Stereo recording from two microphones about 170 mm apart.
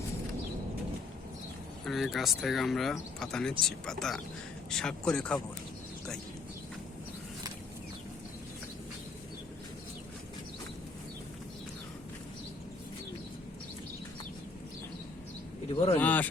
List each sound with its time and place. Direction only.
1.8 s speech: centre (ahead or behind)
15.7 s speech: 35° left (ahead or behind)
16.0 s speech: 10° left (ahead or behind)